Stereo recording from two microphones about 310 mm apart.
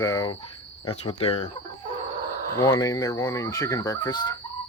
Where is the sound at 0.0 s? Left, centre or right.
Centre.